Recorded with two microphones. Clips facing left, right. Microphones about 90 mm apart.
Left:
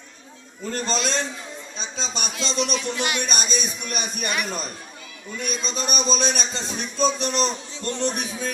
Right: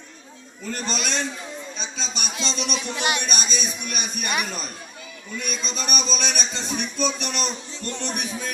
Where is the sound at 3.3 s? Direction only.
35° left (ahead or behind).